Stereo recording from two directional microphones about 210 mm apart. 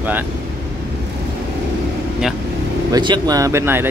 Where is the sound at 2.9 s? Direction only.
20° right (ahead or behind).